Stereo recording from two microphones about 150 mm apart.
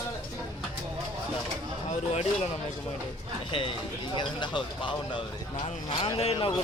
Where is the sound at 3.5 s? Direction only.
35° left (ahead or behind).